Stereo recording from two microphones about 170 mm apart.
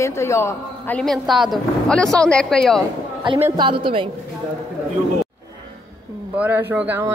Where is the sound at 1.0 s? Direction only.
Centre (ahead or behind).